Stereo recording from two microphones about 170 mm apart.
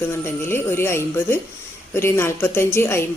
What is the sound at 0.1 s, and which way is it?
A woman's voice, 15° left (ahead or behind).